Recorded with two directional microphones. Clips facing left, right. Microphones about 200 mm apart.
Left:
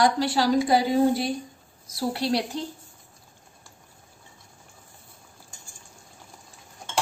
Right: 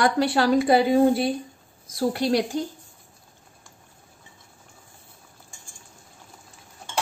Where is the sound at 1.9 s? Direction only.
50° right (ahead or behind).